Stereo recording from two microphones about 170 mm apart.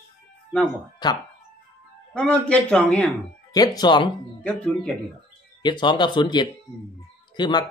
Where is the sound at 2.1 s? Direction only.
5° left (ahead or behind).